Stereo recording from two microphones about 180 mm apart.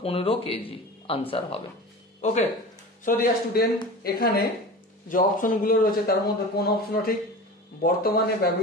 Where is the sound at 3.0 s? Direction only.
55° left (ahead or behind).